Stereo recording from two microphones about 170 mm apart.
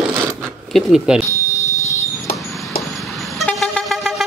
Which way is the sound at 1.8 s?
20° left (ahead or behind).